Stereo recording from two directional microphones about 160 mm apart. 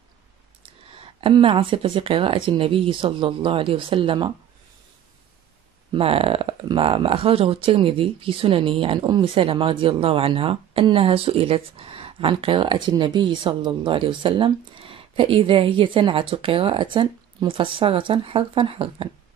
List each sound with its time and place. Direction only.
1.2 s speech: 35° right (ahead or behind)
5.9 s speech: 35° right (ahead or behind)